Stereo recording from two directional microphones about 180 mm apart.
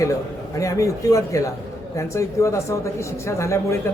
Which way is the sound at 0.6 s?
15° left (ahead or behind).